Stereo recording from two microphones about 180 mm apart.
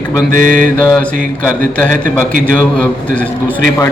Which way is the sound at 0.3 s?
50° right (ahead or behind).